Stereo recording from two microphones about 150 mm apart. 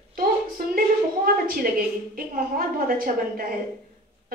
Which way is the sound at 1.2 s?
75° right (ahead or behind).